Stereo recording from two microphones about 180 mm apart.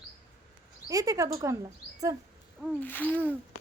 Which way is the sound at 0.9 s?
20° right (ahead or behind).